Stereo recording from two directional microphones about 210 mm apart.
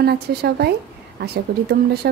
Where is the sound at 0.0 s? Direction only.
50° right (ahead or behind).